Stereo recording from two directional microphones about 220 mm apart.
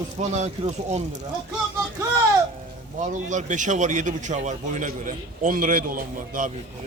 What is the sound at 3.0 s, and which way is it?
A man's voice, 35° right (ahead or behind).